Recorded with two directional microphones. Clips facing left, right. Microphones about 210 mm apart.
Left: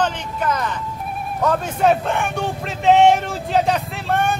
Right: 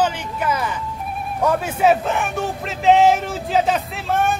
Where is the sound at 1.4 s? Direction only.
5° right (ahead or behind).